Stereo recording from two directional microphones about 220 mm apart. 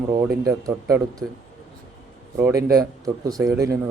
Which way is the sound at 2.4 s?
15° right (ahead or behind).